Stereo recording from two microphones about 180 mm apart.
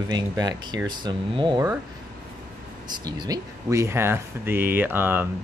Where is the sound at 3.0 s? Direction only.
20° right (ahead or behind).